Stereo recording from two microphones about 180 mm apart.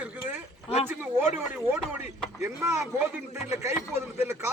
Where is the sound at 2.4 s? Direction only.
15° right (ahead or behind).